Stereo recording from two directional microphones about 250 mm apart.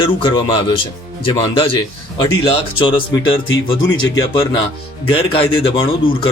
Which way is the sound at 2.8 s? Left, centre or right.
Centre.